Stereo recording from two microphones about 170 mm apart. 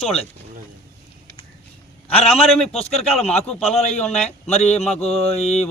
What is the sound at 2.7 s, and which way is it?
A man's voice, 40° left (ahead or behind).